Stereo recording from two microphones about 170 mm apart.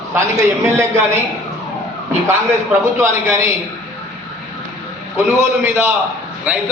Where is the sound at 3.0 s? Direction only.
15° right (ahead or behind).